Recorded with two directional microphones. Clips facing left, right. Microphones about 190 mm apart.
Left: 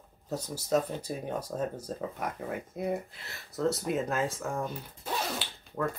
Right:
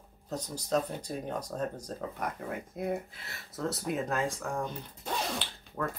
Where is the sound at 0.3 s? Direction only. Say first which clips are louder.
Left 2 dB; 5° left (ahead or behind).